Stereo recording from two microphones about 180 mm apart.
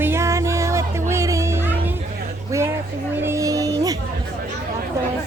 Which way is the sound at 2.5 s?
15° right (ahead or behind).